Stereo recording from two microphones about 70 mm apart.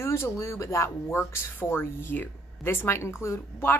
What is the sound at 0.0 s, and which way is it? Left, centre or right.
Speech, left.